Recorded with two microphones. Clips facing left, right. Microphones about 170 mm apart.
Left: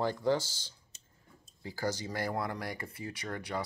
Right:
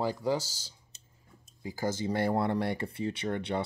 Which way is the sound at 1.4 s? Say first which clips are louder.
Right 2 dB; 20° right (ahead or behind).